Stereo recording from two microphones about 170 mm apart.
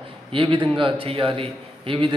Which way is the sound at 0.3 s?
30° right (ahead or behind).